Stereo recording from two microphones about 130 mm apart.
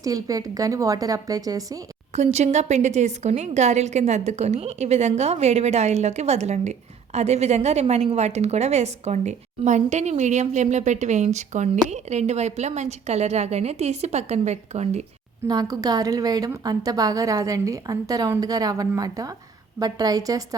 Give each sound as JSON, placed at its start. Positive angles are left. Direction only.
{"t": 0.0, "sound": "a woman's voice", "side_deg": -30}
{"t": 2.1, "sound": "a woman's voice", "side_deg": -60}
{"t": 15.4, "sound": "a woman's voice", "side_deg": -30}